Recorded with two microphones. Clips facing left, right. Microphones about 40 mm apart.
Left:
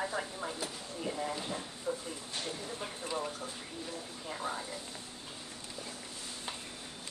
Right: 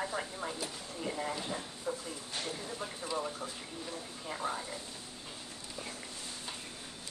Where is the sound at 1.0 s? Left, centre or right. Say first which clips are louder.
Even; centre.